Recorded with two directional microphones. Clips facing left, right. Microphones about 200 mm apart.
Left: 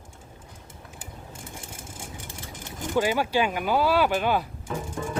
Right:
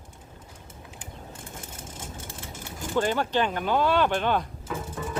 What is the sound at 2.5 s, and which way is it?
Speech, 10° left (ahead or behind).